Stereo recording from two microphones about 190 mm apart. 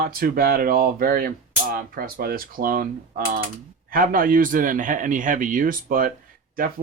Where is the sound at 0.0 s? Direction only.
50° right (ahead or behind).